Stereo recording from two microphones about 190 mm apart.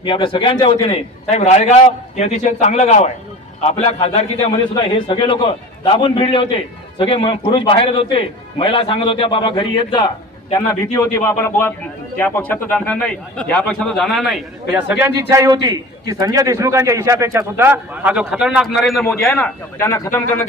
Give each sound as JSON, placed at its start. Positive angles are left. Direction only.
{"t": 0.0, "sound": "a man's voice", "side_deg": 25}
{"t": 15.4, "sound": "a man's voice", "side_deg": -20}
{"t": 19.8, "sound": "a man's voice", "side_deg": 15}